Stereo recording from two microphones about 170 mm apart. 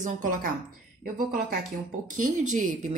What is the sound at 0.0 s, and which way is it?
Speech, 50° right (ahead or behind).